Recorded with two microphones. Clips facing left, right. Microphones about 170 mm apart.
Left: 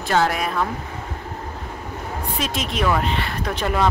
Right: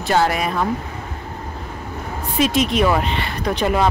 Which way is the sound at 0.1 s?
5° right (ahead or behind).